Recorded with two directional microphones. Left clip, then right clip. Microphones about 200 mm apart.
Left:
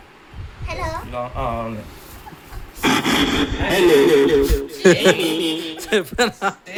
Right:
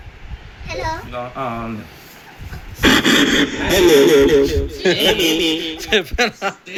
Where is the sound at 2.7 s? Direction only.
15° right (ahead or behind).